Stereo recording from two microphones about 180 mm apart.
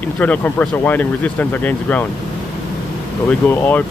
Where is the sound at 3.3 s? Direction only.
10° left (ahead or behind).